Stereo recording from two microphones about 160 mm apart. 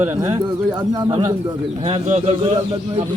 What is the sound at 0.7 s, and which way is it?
Speech, 25° right (ahead or behind).